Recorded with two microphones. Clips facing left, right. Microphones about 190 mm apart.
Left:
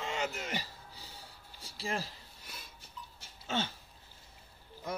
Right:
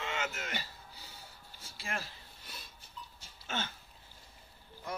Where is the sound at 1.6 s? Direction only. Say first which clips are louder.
Left 4 dB; 35° left (ahead or behind).